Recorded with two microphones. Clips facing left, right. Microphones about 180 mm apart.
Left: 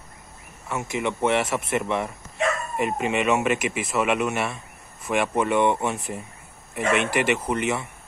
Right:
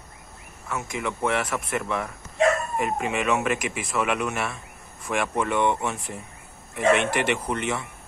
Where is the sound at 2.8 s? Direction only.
Centre (ahead or behind).